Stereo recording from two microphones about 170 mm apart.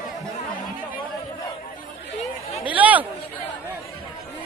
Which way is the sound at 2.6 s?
10° right (ahead or behind).